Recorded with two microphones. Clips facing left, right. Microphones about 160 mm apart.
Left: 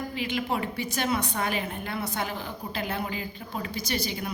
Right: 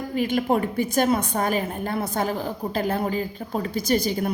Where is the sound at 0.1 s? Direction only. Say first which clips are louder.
Right 11 dB; 45° right (ahead or behind).